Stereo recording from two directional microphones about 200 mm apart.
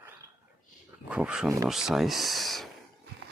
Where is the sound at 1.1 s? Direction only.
5° right (ahead or behind).